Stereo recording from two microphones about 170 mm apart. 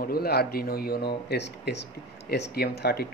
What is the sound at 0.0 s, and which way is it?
A man's voice, 65° left (ahead or behind).